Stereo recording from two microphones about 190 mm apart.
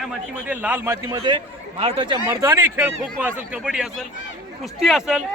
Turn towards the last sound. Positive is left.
turn(degrees=0)  # may be behind; listen again after turning